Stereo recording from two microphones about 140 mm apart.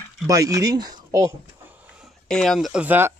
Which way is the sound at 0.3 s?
25° right (ahead or behind).